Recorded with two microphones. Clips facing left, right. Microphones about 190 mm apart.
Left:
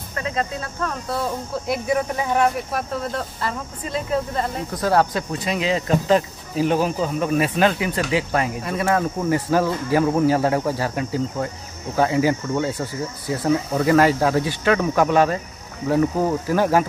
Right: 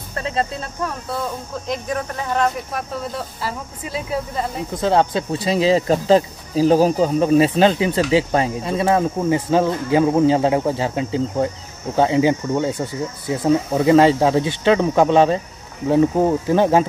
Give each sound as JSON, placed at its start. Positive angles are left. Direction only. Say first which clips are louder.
{"t": 0.2, "sound": "speech", "louder": "right 2 dB", "side_deg": -30}
{"t": 1.0, "sound": "speech", "louder": "left 1 dB", "side_deg": 5}
{"t": 2.9, "sound": "speech", "louder": "left 1 dB", "side_deg": 0}
{"t": 4.7, "sound": "speech", "louder": "right 2 dB", "side_deg": -25}